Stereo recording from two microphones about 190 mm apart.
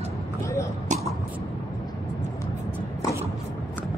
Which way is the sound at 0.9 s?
40° right (ahead or behind).